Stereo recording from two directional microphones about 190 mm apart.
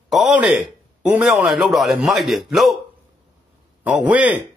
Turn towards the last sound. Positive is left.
turn(degrees=-10)  # may be behind; listen again after turning